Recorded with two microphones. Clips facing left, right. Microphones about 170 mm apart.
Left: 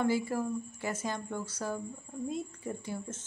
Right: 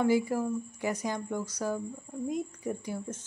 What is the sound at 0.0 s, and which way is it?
Speech, 15° right (ahead or behind).